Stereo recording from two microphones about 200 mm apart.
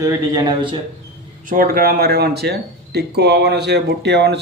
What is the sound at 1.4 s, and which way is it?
Speech, 45° right (ahead or behind).